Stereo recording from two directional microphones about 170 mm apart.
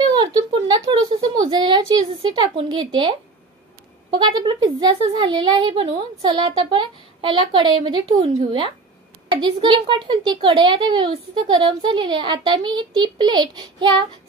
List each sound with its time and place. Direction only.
0.1 s a sound: 30° right (ahead or behind)
1.4 s speech: 25° right (ahead or behind)
4.2 s speech: 25° right (ahead or behind)